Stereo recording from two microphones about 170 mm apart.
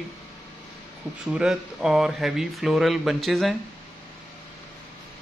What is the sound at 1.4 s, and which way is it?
Speech, 5° right (ahead or behind).